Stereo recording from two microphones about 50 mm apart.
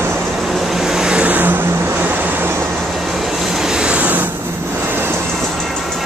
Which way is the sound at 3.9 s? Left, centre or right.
Right.